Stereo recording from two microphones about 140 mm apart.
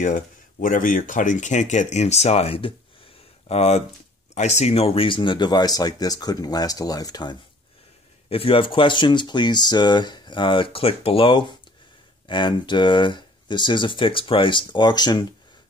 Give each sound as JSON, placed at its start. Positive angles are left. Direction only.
{"t": 0.0, "sound": "speech", "side_deg": 70}
{"t": 8.3, "sound": "speech", "side_deg": 40}